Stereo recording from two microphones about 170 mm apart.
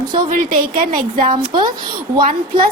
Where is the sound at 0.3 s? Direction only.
55° right (ahead or behind).